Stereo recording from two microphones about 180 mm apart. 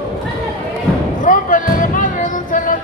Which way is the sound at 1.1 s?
45° left (ahead or behind).